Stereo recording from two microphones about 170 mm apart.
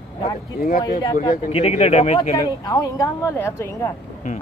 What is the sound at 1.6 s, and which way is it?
Speech, 40° left (ahead or behind).